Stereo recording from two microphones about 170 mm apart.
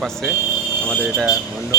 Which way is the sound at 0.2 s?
10° right (ahead or behind).